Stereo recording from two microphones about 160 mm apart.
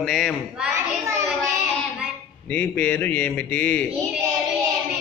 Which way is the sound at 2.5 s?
10° left (ahead or behind).